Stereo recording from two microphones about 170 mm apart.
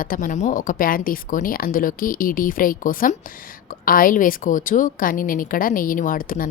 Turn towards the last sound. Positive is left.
turn(degrees=55)  # may be behind; listen again after turning